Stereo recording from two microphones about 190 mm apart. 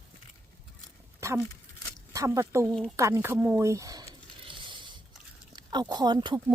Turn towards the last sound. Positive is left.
turn(degrees=-20)  # may be behind; listen again after turning